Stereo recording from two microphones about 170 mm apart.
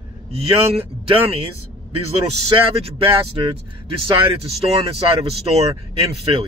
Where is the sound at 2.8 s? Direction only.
30° right (ahead or behind).